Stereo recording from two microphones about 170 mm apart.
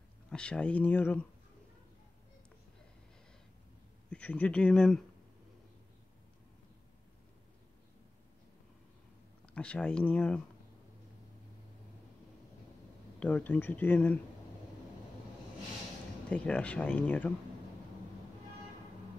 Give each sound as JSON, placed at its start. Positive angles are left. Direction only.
{"t": 0.3, "sound": "speech", "side_deg": 5}
{"t": 4.1, "sound": "speech", "side_deg": 10}
{"t": 9.5, "sound": "speech", "side_deg": 5}
{"t": 13.2, "sound": "speech", "side_deg": 10}
{"t": 16.3, "sound": "speech", "side_deg": 5}